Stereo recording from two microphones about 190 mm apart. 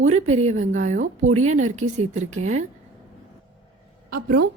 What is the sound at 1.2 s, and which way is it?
Speech, 90° right.